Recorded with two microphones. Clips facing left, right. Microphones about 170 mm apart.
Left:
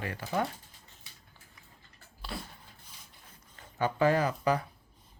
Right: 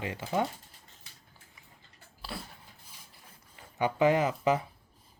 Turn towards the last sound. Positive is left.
turn(degrees=-20)  # may be behind; listen again after turning